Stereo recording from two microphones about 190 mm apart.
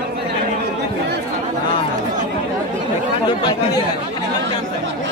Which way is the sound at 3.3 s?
25° left (ahead or behind).